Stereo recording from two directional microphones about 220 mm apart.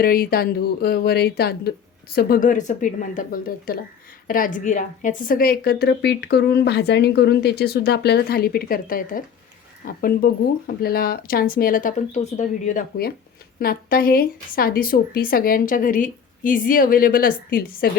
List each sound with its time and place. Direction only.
0.0 s a woman's voice: 40° left (ahead or behind)